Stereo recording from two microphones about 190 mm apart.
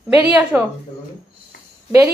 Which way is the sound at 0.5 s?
10° right (ahead or behind).